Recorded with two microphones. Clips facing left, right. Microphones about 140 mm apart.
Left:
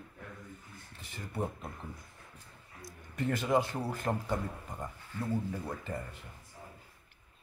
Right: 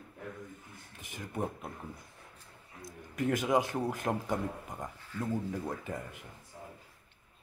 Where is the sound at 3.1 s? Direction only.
5° right (ahead or behind).